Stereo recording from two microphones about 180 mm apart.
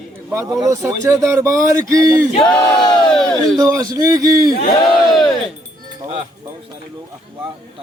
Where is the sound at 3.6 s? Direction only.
20° right (ahead or behind).